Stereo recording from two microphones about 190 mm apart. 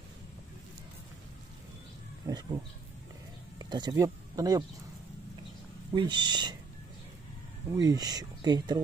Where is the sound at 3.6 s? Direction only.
20° right (ahead or behind).